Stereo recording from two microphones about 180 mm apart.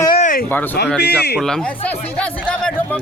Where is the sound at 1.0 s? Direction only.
65° left (ahead or behind).